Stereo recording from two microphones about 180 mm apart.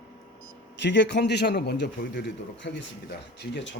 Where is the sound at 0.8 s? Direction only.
75° left (ahead or behind).